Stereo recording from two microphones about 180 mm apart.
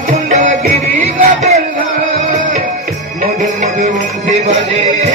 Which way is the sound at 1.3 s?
40° right (ahead or behind).